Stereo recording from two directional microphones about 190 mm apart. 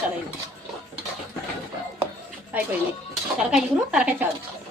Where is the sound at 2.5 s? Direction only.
10° right (ahead or behind).